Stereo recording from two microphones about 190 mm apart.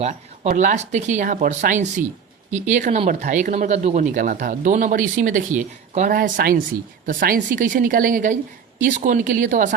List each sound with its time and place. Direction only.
0.0 s speech: 35° right (ahead or behind)
6.1 s speech: 50° right (ahead or behind)